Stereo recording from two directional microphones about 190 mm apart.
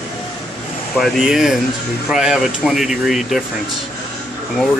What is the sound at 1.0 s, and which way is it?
Speech, centre (ahead or behind).